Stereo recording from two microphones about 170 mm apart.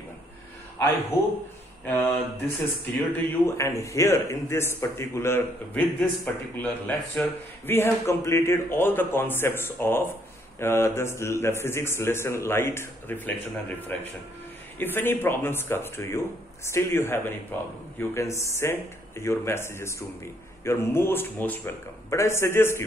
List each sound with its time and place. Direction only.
1.9 s speech: 10° left (ahead or behind)